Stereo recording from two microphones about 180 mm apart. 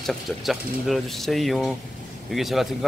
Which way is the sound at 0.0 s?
Centre (ahead or behind).